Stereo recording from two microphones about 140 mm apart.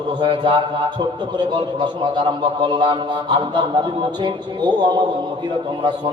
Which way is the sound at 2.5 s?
35° right (ahead or behind).